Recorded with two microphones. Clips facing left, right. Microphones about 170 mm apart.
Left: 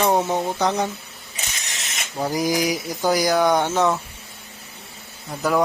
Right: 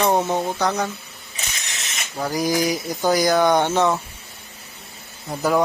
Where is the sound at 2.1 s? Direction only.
20° left (ahead or behind); by 3.9 s centre (ahead or behind).